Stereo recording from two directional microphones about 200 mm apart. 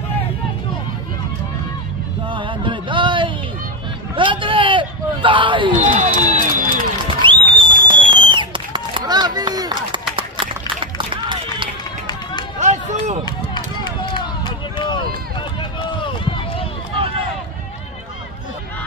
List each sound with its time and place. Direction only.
2.2 s a sound: 25° right (ahead or behind)
5.8 s crowd: 40° right (ahead or behind)
6.3 s run: 40° right (ahead or behind)
7.2 s music: 25° right (ahead or behind)
7.5 s a sound: 25° right (ahead or behind)
10.1 s run: 25° right (ahead or behind)
12.5 s run: 35° right (ahead or behind)
13.2 s run: 20° left (ahead or behind)